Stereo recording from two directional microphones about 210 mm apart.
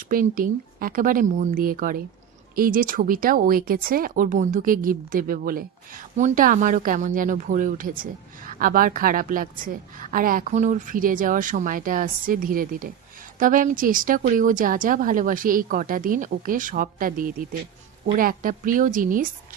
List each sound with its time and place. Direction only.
0.0 s speech: 40° right (ahead or behind)